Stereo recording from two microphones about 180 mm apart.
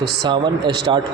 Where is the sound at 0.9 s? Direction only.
25° right (ahead or behind).